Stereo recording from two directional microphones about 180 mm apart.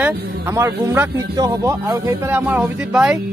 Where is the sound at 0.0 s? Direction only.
10° right (ahead or behind).